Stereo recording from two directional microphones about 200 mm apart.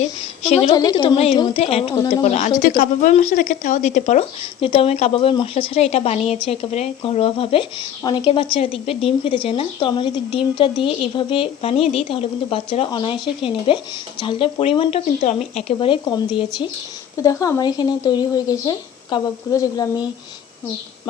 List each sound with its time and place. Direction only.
0.0 s a woman's voice: 30° left (ahead or behind)
0.7 s speech: 20° left (ahead or behind)
2.2 s speech: 35° left (ahead or behind); by 20.1 s 20° left (ahead or behind)